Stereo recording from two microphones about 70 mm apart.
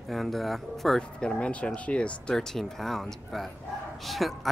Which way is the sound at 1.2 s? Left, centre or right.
Centre.